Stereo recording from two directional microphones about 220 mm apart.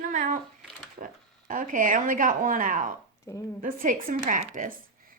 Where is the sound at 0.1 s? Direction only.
35° right (ahead or behind).